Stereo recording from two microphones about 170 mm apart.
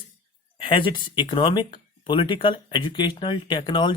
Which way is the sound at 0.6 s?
30° left (ahead or behind).